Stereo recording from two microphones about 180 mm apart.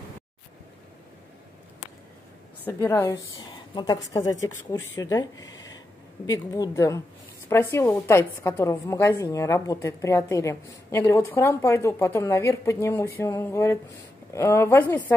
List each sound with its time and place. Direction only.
2.6 s a woman's voice: 15° left (ahead or behind)